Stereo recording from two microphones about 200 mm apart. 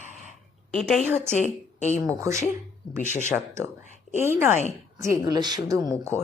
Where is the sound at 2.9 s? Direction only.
35° left (ahead or behind).